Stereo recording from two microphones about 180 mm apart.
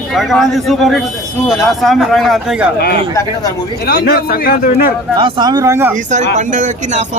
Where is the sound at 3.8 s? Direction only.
60° left (ahead or behind).